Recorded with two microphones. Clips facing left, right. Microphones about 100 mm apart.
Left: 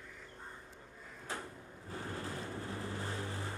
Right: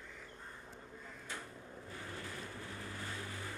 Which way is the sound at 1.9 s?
35° left (ahead or behind).